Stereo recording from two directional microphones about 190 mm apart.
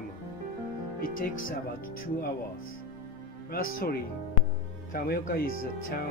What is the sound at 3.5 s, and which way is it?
Speech, 55° left (ahead or behind).